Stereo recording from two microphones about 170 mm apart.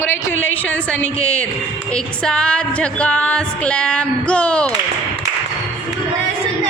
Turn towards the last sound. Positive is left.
turn(degrees=5)  # may be behind; listen again after turning